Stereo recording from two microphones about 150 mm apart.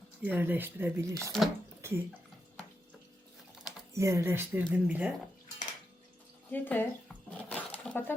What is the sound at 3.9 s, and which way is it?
Speech, 20° right (ahead or behind).